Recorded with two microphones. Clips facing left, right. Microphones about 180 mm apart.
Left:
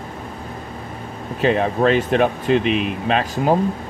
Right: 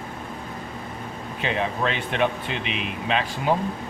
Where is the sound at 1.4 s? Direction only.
40° left (ahead or behind).